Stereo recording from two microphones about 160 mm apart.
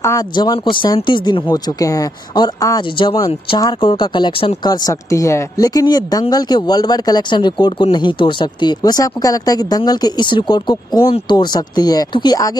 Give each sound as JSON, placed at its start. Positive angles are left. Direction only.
{"t": 0.0, "sound": "speech", "side_deg": 25}
{"t": 4.6, "sound": "speech", "side_deg": 20}